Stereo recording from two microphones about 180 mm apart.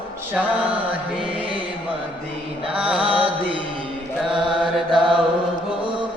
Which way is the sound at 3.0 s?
30° right (ahead or behind).